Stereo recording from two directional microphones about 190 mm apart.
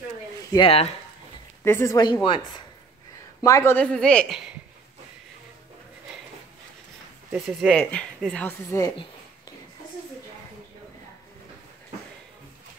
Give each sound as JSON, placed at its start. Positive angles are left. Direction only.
{"t": 0.5, "sound": "speech", "side_deg": 25}
{"t": 1.6, "sound": "speech", "side_deg": 15}
{"t": 3.4, "sound": "a woman's voice", "side_deg": 15}
{"t": 7.4, "sound": "speech", "side_deg": 5}